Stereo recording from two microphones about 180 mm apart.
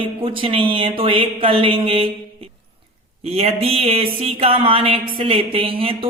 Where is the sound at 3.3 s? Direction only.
35° right (ahead or behind).